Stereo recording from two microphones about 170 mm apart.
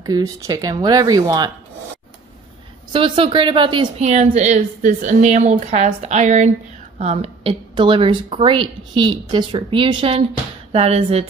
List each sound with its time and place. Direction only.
0.0 s speech: 20° right (ahead or behind)
2.9 s speech: 30° right (ahead or behind)
4.0 s a woman's voice: 40° right (ahead or behind)